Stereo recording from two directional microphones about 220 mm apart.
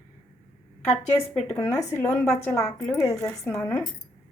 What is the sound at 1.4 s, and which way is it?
Speech, 15° left (ahead or behind).